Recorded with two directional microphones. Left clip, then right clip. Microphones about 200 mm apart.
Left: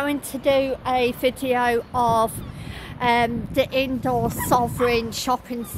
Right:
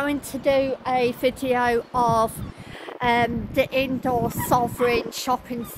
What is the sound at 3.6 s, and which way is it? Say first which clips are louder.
Speech: left 1 dB; 50° left (ahead or behind).